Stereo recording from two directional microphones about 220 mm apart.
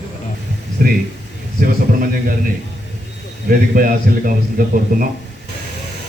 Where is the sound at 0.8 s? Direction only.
40° right (ahead or behind).